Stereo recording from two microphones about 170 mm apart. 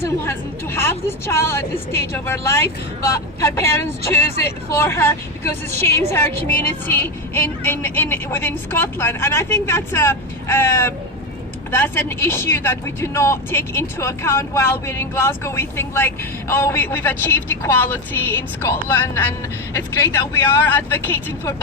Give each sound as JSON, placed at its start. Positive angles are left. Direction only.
{"t": 0.0, "sound": "speech", "side_deg": 15}